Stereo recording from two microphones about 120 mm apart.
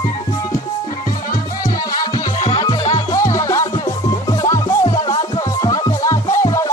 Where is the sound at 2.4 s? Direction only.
40° left (ahead or behind).